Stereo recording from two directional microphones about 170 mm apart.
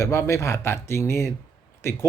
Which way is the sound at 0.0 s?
15° left (ahead or behind).